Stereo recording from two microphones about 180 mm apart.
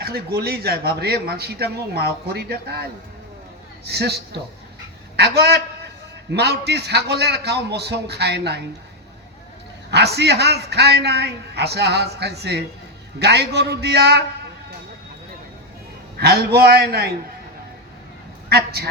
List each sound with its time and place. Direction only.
0.0 s speech: 60° right (ahead or behind)
3.8 s a woman's voice: 65° right (ahead or behind)
9.9 s speech: 65° right (ahead or behind)
16.1 s speech: 60° right (ahead or behind)
18.4 s a man's voice: 60° right (ahead or behind)